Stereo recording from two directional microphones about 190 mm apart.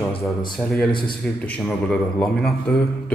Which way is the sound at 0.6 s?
5° left (ahead or behind).